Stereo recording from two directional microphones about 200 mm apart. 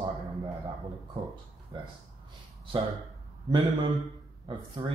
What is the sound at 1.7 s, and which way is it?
Speech, 25° right (ahead or behind).